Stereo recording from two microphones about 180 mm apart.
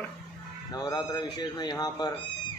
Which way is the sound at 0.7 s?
20° left (ahead or behind).